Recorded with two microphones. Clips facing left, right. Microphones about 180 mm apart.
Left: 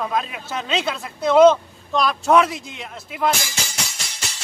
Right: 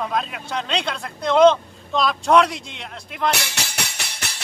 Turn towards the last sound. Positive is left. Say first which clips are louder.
# right 1 dB
turn(degrees=-60)  # may be behind; listen again after turning